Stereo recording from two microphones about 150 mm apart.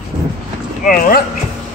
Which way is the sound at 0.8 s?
70° left (ahead or behind).